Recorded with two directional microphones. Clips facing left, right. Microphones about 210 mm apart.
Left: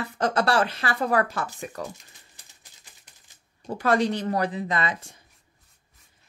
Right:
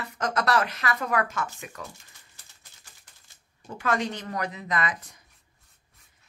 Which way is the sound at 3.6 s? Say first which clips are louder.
Left 5 dB; 35° left (ahead or behind).